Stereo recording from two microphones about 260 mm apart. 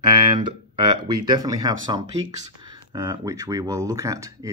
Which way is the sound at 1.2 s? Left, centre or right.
Centre.